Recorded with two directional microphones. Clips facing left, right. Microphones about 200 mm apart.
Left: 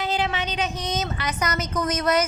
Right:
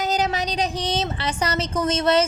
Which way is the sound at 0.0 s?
40° right (ahead or behind).